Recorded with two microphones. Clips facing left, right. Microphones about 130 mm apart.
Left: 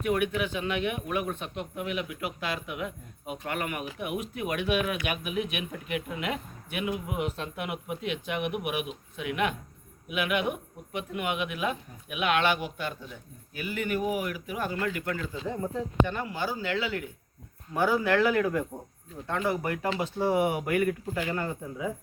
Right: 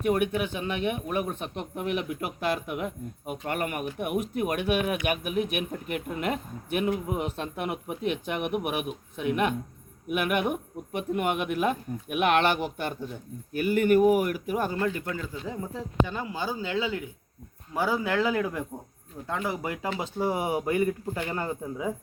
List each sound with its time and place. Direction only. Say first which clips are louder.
0.0 s speech: right 2 dB; 40° right (ahead or behind)
15.4 s speech: left 3 dB; 5° right (ahead or behind)
16.1 s speech: even; 15° right (ahead or behind)